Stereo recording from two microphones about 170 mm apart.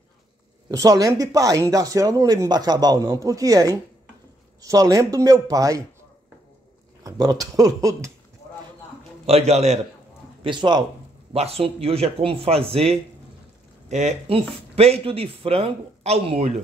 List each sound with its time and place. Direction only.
0.7 s speech: 20° right (ahead or behind)
7.0 s speech: 20° right (ahead or behind)
9.2 s speech: 40° right (ahead or behind)
10.4 s speech: 30° right (ahead or behind)